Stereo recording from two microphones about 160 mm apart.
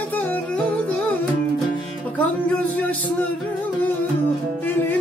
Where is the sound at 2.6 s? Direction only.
10° left (ahead or behind).